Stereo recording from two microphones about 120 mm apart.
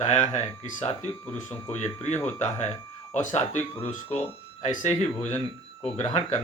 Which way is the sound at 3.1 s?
90° left.